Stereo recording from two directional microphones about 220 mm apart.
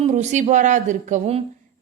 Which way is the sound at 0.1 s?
30° right (ahead or behind).